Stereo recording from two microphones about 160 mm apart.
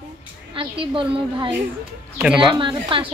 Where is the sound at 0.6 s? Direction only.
30° right (ahead or behind).